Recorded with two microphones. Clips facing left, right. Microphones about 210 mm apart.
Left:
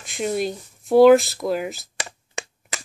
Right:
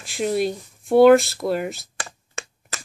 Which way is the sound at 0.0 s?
Centre (ahead or behind).